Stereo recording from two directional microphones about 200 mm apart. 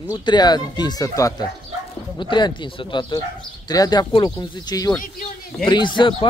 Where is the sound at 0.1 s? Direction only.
20° left (ahead or behind).